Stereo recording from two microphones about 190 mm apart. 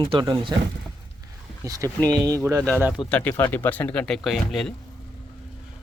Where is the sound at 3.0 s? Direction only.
10° left (ahead or behind).